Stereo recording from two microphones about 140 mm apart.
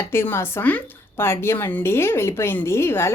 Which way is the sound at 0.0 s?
15° left (ahead or behind).